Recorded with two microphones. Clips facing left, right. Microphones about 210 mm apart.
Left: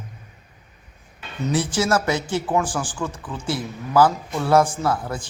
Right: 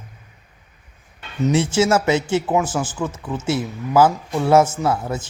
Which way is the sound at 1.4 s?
25° right (ahead or behind).